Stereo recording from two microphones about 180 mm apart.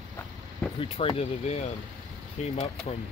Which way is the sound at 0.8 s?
30° left (ahead or behind).